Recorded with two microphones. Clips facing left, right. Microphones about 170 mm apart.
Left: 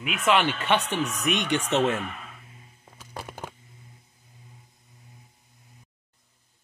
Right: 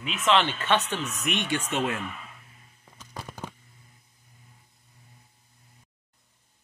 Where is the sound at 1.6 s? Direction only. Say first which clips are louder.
Left 5 dB; 70° left (ahead or behind).